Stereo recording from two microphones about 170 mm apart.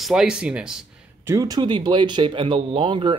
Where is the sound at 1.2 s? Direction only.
20° right (ahead or behind).